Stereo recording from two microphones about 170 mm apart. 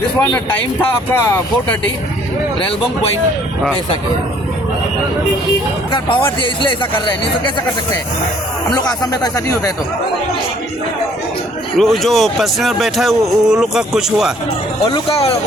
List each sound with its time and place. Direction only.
0.2 s speech: 10° left (ahead or behind)
5.9 s speech: 30° left (ahead or behind)
8.7 s speech: 25° left (ahead or behind)
11.8 s speech: centre (ahead or behind)
14.8 s speech: 30° left (ahead or behind)